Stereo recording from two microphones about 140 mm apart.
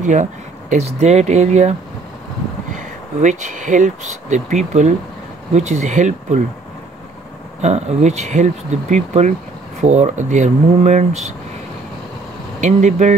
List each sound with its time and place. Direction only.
0.0 s speech: 60° right (ahead or behind)
7.6 s speech: 50° right (ahead or behind)
12.5 s speech: 60° right (ahead or behind)